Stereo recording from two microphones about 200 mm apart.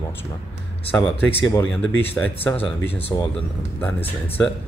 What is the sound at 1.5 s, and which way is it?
Speech, 15° left (ahead or behind).